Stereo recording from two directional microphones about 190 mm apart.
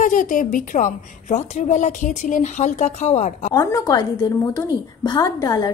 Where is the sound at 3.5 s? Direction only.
15° left (ahead or behind).